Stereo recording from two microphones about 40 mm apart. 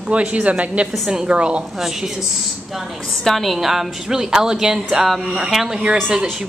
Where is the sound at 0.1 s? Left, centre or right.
Right.